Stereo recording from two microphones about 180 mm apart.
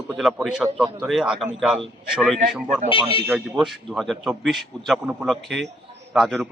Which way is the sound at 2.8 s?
30° left (ahead or behind).